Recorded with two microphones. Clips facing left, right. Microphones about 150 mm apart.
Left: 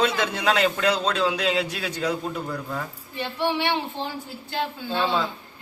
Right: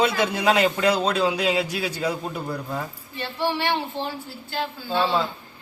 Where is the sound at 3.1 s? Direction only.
15° left (ahead or behind).